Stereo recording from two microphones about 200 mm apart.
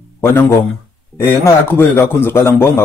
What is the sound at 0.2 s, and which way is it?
A man's voice, 10° left (ahead or behind).